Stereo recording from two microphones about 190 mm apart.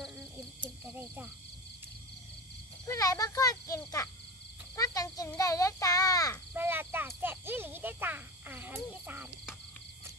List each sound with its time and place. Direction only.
0.6 s cricket: 10° right (ahead or behind)
2.9 s a sound: 20° left (ahead or behind)
4.7 s cricket: 20° left (ahead or behind)
5.4 s child singing: 15° left (ahead or behind)
6.5 s cricket: 10° right (ahead or behind)